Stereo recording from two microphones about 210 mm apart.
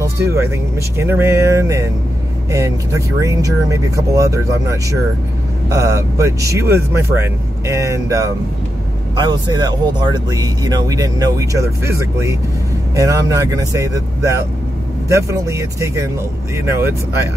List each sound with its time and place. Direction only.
0.0 s vehicle: 10° right (ahead or behind)
0.9 s speech: 10° right (ahead or behind)